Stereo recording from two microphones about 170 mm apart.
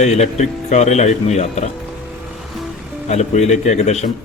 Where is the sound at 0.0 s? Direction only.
40° left (ahead or behind).